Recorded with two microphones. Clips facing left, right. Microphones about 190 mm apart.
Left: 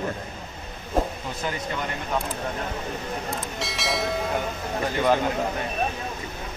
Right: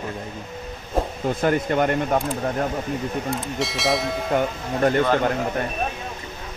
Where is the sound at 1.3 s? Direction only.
55° right (ahead or behind).